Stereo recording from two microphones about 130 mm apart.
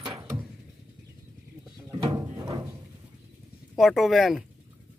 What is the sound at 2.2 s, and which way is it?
Music, 25° right (ahead or behind).